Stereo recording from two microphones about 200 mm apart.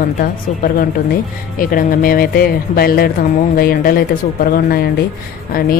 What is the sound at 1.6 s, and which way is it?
Speech, 45° left (ahead or behind).